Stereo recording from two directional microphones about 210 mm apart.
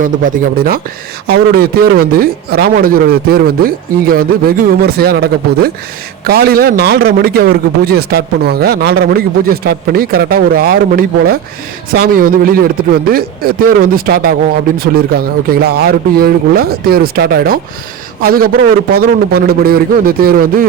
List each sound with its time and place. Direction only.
0.0 s a man's voice: 40° right (ahead or behind)